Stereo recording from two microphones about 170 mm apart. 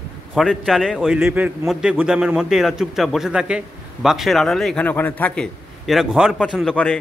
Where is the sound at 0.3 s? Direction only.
Centre (ahead or behind).